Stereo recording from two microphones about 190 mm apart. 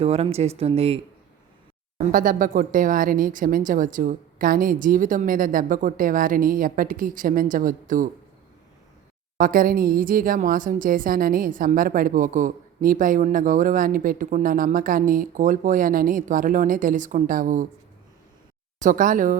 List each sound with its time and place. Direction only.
0.0 s speech: 30° right (ahead or behind)
2.0 s a woman's voice: 45° right (ahead or behind)
9.4 s a woman's voice: 50° right (ahead or behind)
18.8 s a woman's voice: 45° right (ahead or behind)